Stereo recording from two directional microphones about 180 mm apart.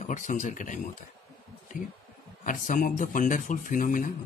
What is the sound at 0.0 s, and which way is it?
Speech, 45° left (ahead or behind).